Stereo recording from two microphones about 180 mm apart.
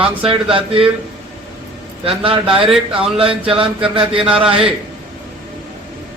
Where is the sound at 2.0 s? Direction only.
30° right (ahead or behind).